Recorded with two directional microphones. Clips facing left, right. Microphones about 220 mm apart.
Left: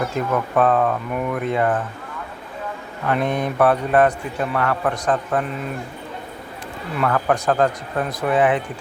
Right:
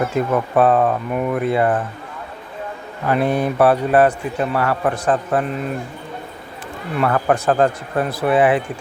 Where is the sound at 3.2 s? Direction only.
35° right (ahead or behind).